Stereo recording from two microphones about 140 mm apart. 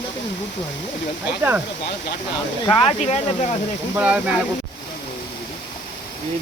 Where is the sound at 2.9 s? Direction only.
55° left (ahead or behind).